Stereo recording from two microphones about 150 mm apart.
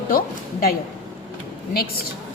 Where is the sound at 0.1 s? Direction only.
75° left (ahead or behind).